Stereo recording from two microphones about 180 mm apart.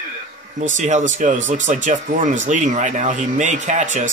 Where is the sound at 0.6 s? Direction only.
40° right (ahead or behind).